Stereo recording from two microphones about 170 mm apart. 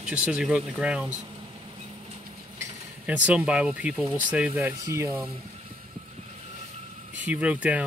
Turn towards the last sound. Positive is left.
turn(degrees=-10)  # may be behind; listen again after turning